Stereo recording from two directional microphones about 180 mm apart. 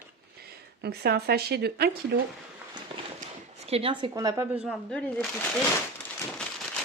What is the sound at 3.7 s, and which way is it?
Speech, 30° right (ahead or behind).